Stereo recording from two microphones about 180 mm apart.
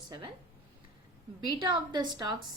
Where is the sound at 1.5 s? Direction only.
25° right (ahead or behind).